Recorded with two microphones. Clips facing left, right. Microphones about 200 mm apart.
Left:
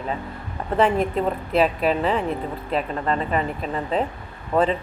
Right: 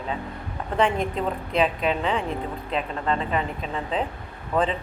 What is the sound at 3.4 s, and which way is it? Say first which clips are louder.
Speech: left 3 dB; 45° left (ahead or behind).